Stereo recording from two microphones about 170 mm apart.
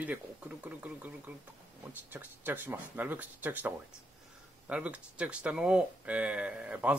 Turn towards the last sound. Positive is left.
turn(degrees=-10)  # may be behind; listen again after turning